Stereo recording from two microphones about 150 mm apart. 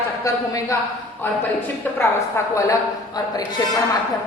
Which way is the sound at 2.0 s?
20° left (ahead or behind).